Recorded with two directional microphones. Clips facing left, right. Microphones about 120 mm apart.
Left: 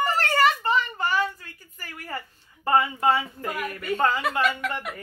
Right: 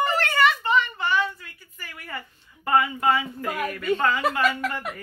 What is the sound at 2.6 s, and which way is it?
Speech, 30° left (ahead or behind).